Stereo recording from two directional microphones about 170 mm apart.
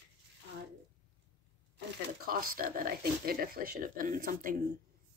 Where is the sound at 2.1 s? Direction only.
60° right (ahead or behind).